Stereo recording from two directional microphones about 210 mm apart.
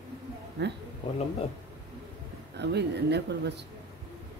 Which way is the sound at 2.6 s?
55° right (ahead or behind).